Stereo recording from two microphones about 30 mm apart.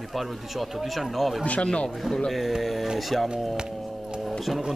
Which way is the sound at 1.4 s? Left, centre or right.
Left.